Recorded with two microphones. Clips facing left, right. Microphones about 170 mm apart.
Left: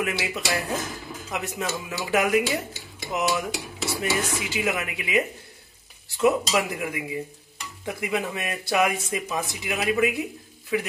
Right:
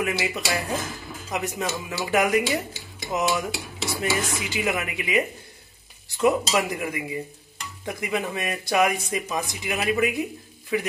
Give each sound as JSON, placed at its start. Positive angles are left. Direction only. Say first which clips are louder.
{"t": 0.0, "sound": "speech", "louder": "right 1 dB", "side_deg": 0}
{"t": 6.2, "sound": "speech", "louder": "even", "side_deg": 5}